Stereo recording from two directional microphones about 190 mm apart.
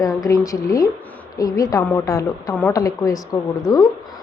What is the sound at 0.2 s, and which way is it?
A woman's voice, 15° left (ahead or behind).